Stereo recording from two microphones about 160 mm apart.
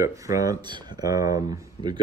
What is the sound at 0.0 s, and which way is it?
Speech, 20° right (ahead or behind).